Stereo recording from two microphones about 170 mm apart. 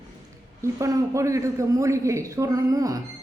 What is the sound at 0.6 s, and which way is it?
A man's voice, 20° right (ahead or behind).